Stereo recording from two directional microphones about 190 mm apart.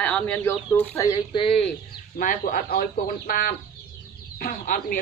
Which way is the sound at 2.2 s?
50° left (ahead or behind).